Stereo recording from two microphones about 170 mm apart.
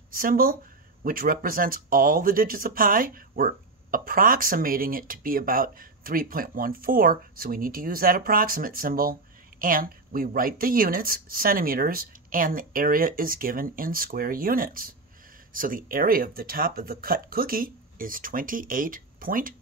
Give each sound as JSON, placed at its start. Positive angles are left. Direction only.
{"t": 0.1, "sound": "speech", "side_deg": -55}